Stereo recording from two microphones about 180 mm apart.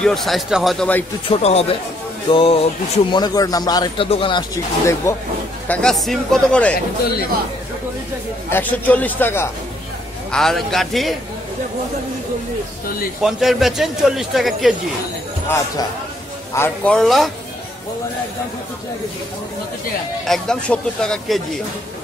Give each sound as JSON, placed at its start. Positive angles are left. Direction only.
{"t": 0.0, "sound": "a man's voice", "side_deg": 0}
{"t": 1.3, "sound": "speech", "side_deg": 35}
{"t": 5.7, "sound": "a man's voice", "side_deg": 5}
{"t": 8.5, "sound": "a man's voice", "side_deg": 10}
{"t": 13.2, "sound": "a man's voice", "side_deg": 0}
{"t": 16.5, "sound": "a man's voice", "side_deg": 10}
{"t": 20.2, "sound": "a man's voice", "side_deg": 5}